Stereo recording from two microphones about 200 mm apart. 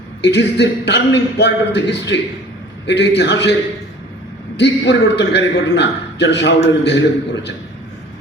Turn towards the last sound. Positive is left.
turn(degrees=60)  # may be behind; listen again after turning